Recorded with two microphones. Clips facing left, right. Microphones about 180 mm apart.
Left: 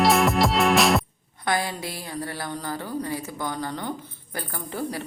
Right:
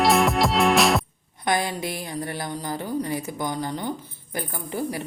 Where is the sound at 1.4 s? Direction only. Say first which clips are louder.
Right 2 dB; 20° right (ahead or behind).